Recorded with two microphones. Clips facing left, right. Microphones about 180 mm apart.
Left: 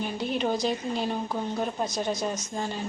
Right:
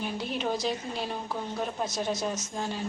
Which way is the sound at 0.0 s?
Centre (ahead or behind).